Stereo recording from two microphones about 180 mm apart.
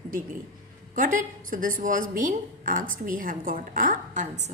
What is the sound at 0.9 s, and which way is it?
A woman's voice, 50° right (ahead or behind).